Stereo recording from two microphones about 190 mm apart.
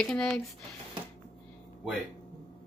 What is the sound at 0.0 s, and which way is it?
Speech, 5° left (ahead or behind).